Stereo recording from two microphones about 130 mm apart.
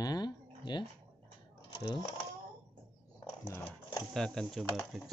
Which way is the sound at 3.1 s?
25° left (ahead or behind).